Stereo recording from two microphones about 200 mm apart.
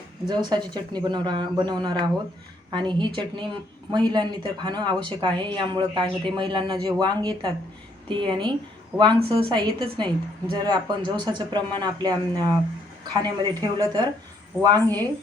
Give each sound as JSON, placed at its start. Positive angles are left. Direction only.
{"t": 0.3, "sound": "speech", "side_deg": -20}